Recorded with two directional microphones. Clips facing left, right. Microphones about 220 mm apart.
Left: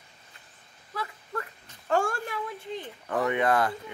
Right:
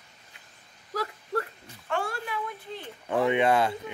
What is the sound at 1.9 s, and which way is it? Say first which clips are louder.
Speech: left 4 dB; 45° left (ahead or behind).